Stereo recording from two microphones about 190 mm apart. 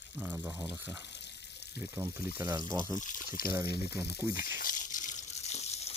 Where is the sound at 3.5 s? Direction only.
10° right (ahead or behind).